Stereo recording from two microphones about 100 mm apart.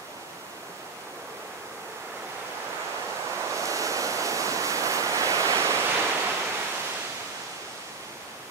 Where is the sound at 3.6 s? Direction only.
35° right (ahead or behind).